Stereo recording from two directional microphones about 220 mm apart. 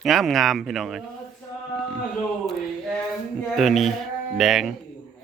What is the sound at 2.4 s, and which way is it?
Male singing, centre (ahead or behind).